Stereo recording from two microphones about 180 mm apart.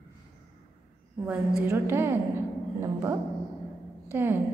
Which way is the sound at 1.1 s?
15° right (ahead or behind).